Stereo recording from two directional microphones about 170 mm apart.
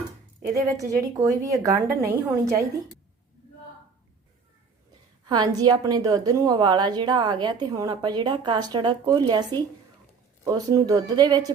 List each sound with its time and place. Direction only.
0.8 s a woman's voice: 20° right (ahead or behind)
5.2 s a woman's voice: 25° right (ahead or behind)